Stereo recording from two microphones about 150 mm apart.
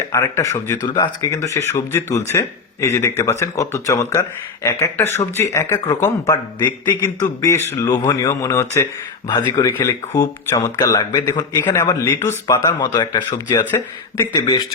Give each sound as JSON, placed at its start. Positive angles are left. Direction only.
{"t": 0.1, "sound": "a man's voice", "side_deg": 20}